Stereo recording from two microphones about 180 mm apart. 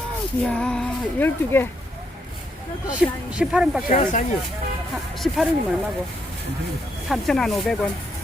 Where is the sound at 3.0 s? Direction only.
5° right (ahead or behind).